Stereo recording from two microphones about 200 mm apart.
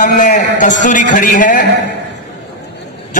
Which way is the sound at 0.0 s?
40° left (ahead or behind).